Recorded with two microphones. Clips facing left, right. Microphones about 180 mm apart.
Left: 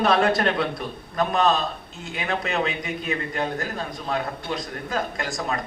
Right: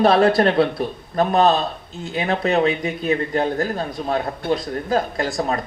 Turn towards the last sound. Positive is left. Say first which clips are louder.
# right 6 dB
turn(degrees=-35)  # may be behind; listen again after turning